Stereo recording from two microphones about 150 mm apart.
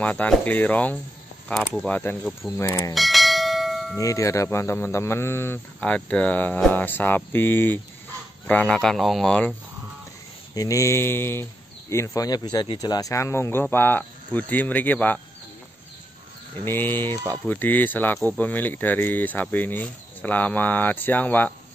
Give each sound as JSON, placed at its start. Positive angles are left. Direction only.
{"t": 0.0, "sound": "speech", "side_deg": 10}
{"t": 2.9, "sound": "bell", "side_deg": 0}
{"t": 4.0, "sound": "speech", "side_deg": 20}
{"t": 10.5, "sound": "speech", "side_deg": 25}
{"t": 16.6, "sound": "speech", "side_deg": 15}